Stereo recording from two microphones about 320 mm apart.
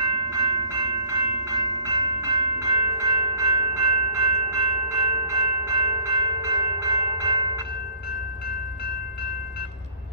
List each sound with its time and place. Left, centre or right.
0.0 s train: centre